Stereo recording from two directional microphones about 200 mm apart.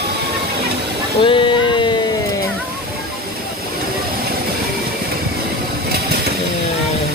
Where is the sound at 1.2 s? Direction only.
25° left (ahead or behind).